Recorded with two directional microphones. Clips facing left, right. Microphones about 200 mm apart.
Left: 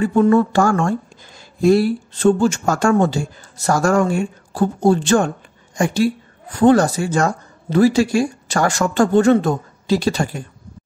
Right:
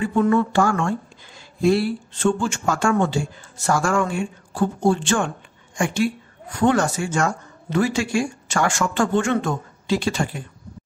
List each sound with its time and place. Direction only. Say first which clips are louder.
0.0 s speech: left 5 dB; 40° left (ahead or behind)